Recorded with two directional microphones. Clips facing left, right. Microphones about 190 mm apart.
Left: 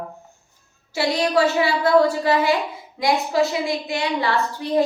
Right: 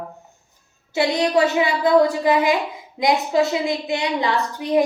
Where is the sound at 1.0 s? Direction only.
20° right (ahead or behind).